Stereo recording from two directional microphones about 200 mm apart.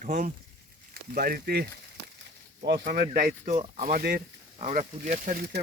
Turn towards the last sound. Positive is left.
turn(degrees=-45)  # may be behind; listen again after turning